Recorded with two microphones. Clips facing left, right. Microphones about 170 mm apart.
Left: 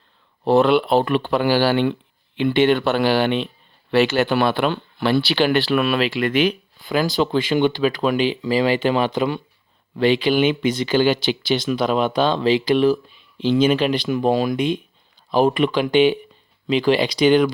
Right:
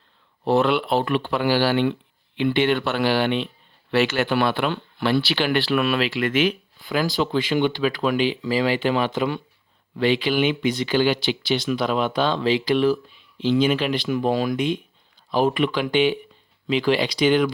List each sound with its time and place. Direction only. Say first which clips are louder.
0.4 s speech: left 4 dB; 35° left (ahead or behind); by 8.8 s 20° left (ahead or behind)
9.0 s speech: left 3 dB; 35° left (ahead or behind)
10.4 s speech: left 3 dB; 40° left (ahead or behind)
11.8 s speech: left 3 dB; 20° left (ahead or behind)
13.5 s speech: left 3 dB; 40° left (ahead or behind)
14.0 s speech: left 3 dB; 25° left (ahead or behind)